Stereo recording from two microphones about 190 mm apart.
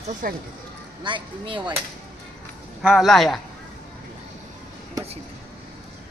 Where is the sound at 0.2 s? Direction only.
45° right (ahead or behind).